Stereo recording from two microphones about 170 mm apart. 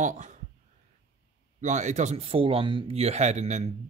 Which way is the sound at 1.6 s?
45° right (ahead or behind).